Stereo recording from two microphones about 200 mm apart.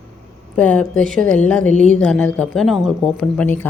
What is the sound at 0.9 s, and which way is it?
Speech, 40° right (ahead or behind).